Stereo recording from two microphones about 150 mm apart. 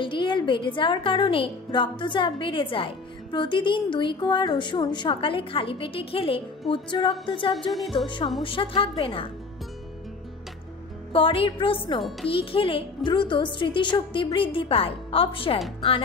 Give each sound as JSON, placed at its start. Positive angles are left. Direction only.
{"t": 0.0, "sound": "a woman's voice", "side_deg": 35}
{"t": 11.1, "sound": "a woman's voice", "side_deg": 35}